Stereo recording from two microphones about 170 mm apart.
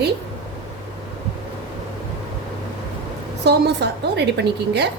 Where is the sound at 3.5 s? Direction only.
80° right.